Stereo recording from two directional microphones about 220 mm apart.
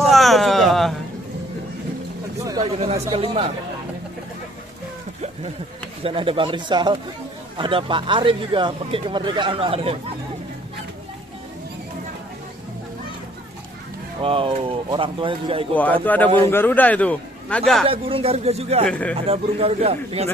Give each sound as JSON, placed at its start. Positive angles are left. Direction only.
{"t": 0.1, "sound": "a sound", "side_deg": 0}
{"t": 2.6, "sound": "speech", "side_deg": -30}
{"t": 6.0, "sound": "speech", "side_deg": -25}
{"t": 14.2, "sound": "speech", "side_deg": -25}
{"t": 15.7, "sound": "a man's voice", "side_deg": 5}
{"t": 17.8, "sound": "speech", "side_deg": -25}
{"t": 18.9, "sound": "a man's voice", "side_deg": 5}
{"t": 19.1, "sound": "speech", "side_deg": -25}